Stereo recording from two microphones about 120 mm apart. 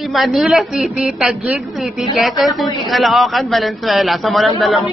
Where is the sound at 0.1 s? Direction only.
Centre (ahead or behind).